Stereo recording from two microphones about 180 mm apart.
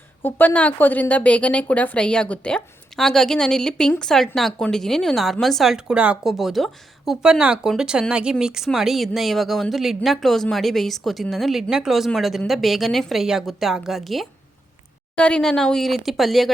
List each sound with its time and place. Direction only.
0.2 s speech: 10° left (ahead or behind)